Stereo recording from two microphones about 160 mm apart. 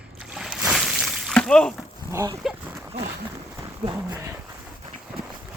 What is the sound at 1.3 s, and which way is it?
Speech, 5° left (ahead or behind).